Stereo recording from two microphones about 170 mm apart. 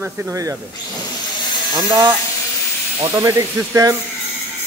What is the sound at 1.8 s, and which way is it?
A man's voice, 25° right (ahead or behind).